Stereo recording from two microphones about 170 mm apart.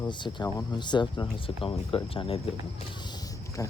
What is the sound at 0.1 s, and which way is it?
Speech, 25° left (ahead or behind).